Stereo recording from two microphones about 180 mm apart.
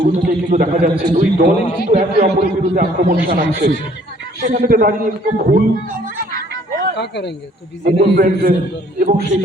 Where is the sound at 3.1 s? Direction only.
65° right (ahead or behind).